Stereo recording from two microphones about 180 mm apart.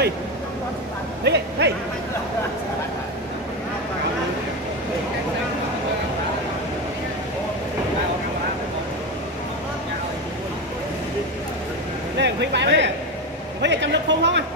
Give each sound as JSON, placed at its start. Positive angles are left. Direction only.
{"t": 1.2, "sound": "a man's voice", "side_deg": -70}
{"t": 12.2, "sound": "a man's voice", "side_deg": -75}